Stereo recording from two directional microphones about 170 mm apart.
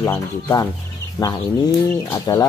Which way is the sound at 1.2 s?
20° left (ahead or behind).